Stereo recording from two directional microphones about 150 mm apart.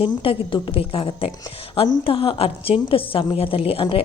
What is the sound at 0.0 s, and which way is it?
Speech, 35° left (ahead or behind).